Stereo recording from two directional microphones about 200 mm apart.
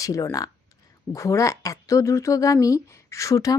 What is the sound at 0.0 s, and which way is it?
Speech, 15° left (ahead or behind).